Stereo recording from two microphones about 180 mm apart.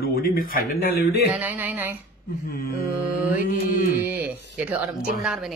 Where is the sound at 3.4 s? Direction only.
50° left (ahead or behind).